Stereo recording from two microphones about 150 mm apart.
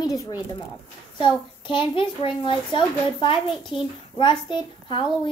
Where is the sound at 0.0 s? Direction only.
25° left (ahead or behind).